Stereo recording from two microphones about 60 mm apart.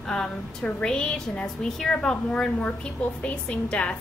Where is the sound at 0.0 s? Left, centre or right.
Centre.